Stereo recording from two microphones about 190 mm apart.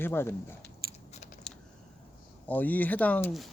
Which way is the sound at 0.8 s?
55° right (ahead or behind).